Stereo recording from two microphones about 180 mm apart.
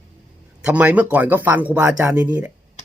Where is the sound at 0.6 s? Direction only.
5° right (ahead or behind).